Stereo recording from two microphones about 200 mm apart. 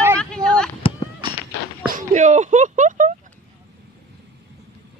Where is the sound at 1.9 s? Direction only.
40° right (ahead or behind).